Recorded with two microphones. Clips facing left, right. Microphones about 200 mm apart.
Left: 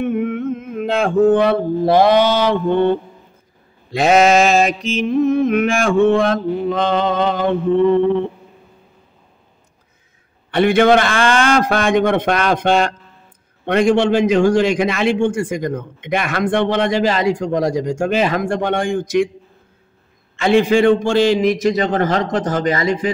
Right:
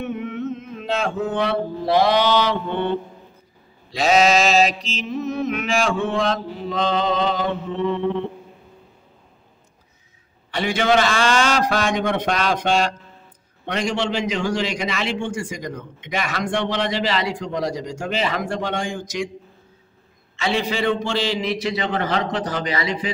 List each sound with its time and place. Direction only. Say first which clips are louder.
0.0 s mantra: left 7 dB; 55° left (ahead or behind)
3.9 s a man's voice: left 4 dB; 55° left (ahead or behind)
10.5 s a man's voice: left 7 dB; 55° left (ahead or behind)
20.3 s a man's voice: left 10 dB; 50° left (ahead or behind)